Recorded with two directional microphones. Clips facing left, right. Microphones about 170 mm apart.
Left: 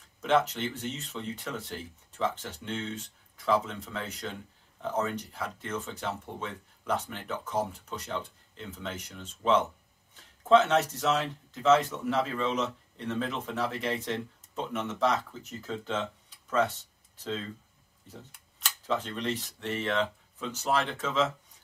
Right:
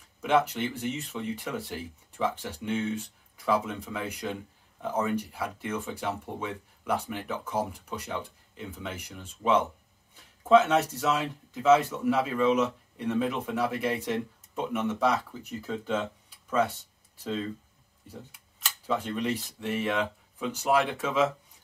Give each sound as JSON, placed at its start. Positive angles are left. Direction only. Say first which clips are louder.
{"t": 0.2, "sound": "speech", "louder": "right 1 dB", "side_deg": -10}
{"t": 18.6, "sound": "speech", "louder": "right 1 dB", "side_deg": -10}